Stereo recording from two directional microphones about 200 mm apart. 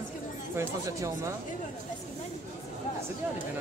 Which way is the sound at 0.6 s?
15° right (ahead or behind).